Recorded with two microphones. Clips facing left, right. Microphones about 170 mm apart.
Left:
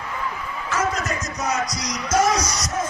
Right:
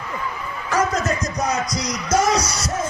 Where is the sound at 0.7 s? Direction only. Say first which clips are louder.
Right 4 dB; 35° right (ahead or behind).